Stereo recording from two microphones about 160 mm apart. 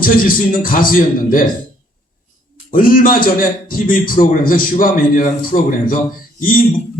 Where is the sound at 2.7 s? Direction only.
60° left (ahead or behind).